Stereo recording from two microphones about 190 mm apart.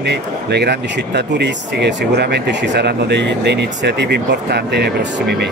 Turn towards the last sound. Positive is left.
turn(degrees=-60)  # may be behind; listen again after turning